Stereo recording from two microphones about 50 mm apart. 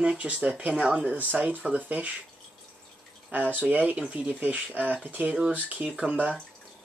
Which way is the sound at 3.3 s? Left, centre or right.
Right.